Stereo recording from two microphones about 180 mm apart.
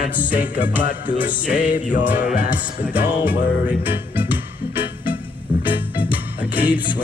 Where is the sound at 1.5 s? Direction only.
50° left (ahead or behind).